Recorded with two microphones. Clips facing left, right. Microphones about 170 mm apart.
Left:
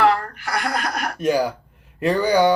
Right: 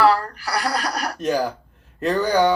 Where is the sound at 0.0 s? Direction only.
35° right (ahead or behind).